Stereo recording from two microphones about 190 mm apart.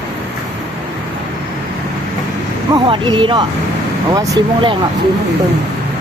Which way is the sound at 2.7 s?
25° right (ahead or behind).